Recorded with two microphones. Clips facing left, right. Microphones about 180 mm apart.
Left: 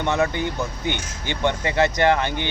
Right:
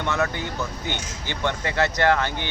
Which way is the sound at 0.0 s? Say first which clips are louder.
Left 3 dB; 15° left (ahead or behind).